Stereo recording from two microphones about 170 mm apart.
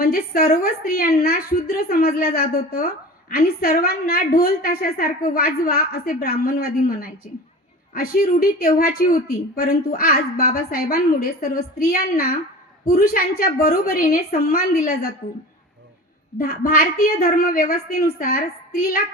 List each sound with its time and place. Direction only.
0.0 s a woman's voice: 60° left (ahead or behind)
16.4 s a woman's voice: 60° left (ahead or behind)